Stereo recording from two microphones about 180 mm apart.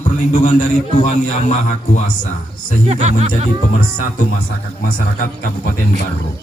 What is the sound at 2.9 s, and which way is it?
Speech, 35° right (ahead or behind).